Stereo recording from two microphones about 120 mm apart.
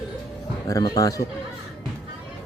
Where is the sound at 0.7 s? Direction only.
30° left (ahead or behind).